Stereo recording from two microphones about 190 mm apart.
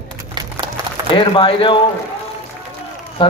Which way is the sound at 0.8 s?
15° right (ahead or behind).